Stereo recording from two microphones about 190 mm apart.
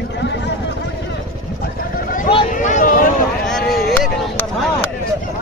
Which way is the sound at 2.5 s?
45° left (ahead or behind).